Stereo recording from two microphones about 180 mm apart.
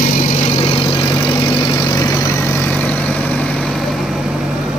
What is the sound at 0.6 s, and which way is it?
Vehicle, 25° left (ahead or behind).